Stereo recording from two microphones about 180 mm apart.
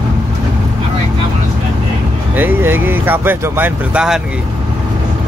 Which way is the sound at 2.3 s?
10° right (ahead or behind).